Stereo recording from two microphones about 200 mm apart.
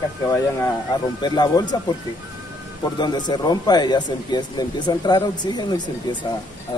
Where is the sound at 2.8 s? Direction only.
20° left (ahead or behind).